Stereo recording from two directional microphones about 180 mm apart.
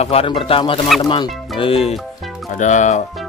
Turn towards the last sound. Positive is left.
turn(degrees=40)  # may be behind; listen again after turning